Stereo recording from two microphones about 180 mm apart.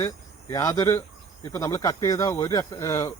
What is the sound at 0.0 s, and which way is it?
Speech, 15° left (ahead or behind).